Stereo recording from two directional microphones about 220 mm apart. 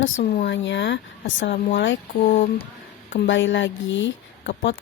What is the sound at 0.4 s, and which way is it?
Speech, 55° left (ahead or behind).